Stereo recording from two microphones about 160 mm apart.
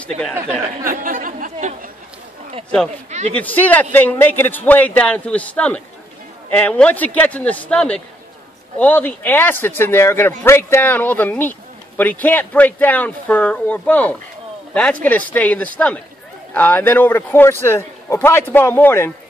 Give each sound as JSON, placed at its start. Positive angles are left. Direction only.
{"t": 0.8, "sound": "chatter", "side_deg": -60}
{"t": 3.1, "sound": "a man's voice", "side_deg": -45}
{"t": 3.3, "sound": "a man's voice", "side_deg": 10}